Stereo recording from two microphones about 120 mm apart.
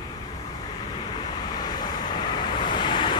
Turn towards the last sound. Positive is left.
turn(degrees=40)  # may be behind; listen again after turning